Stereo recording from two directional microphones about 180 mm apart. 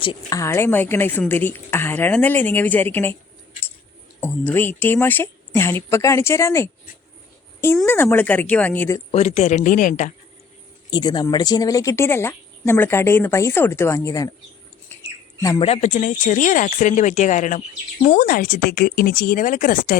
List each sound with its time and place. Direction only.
0.0 s a woman's voice: 25° left (ahead or behind)
4.2 s a woman's voice: 10° left (ahead or behind)
7.9 s a woman's voice: 10° left (ahead or behind)
9.1 s a woman's voice: 35° left (ahead or behind)
10.9 s a woman's voice: 25° left (ahead or behind)
15.4 s speech: 20° left (ahead or behind)
15.6 s speech: 35° left (ahead or behind)